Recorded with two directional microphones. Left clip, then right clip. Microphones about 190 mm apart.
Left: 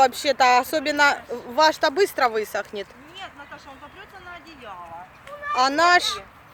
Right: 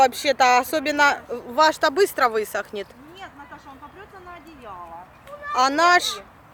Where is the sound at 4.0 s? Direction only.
45° left (ahead or behind).